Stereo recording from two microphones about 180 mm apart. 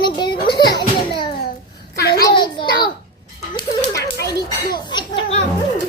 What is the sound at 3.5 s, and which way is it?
Music, 20° left (ahead or behind).